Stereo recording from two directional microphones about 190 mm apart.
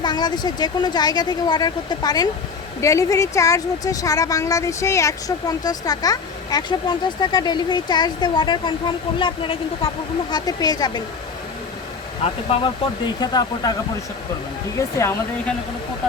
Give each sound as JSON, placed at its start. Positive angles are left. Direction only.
{"t": 0.0, "sound": "speech", "side_deg": 20}
{"t": 12.2, "sound": "speech", "side_deg": 30}
{"t": 14.8, "sound": "speech", "side_deg": 15}